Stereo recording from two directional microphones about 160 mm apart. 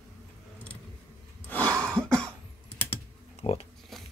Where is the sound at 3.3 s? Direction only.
40° left (ahead or behind).